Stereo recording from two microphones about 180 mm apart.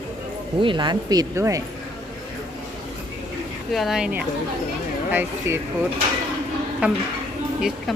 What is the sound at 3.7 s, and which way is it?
Speech, centre (ahead or behind).